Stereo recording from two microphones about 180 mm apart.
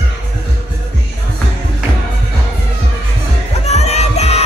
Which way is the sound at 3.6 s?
35° left (ahead or behind).